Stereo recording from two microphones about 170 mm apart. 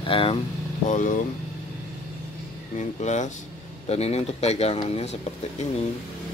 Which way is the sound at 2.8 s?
45° left (ahead or behind).